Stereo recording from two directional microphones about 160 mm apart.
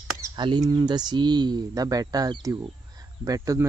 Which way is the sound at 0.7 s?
25° right (ahead or behind).